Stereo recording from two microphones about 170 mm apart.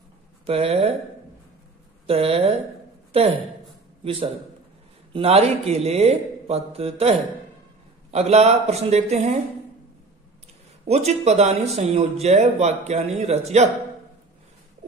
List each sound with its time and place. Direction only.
0.5 s a man's voice: 35° right (ahead or behind)
2.0 s a man's voice: 35° right (ahead or behind)
10.9 s a man's voice: 40° right (ahead or behind)